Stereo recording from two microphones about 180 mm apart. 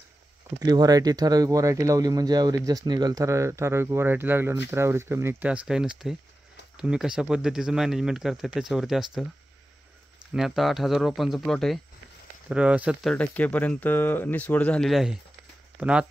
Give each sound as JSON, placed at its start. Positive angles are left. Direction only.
{"t": 0.7, "sound": "speech", "side_deg": -20}
{"t": 10.3, "sound": "speech", "side_deg": 0}
{"t": 13.1, "sound": "speech", "side_deg": 10}